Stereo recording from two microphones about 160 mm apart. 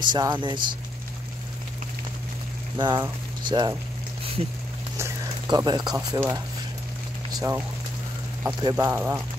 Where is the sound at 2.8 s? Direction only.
25° right (ahead or behind).